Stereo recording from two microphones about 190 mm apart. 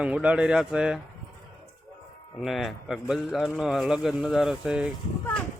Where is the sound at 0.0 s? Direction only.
5° right (ahead or behind).